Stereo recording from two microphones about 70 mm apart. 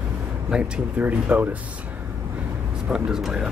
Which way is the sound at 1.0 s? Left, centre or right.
Right.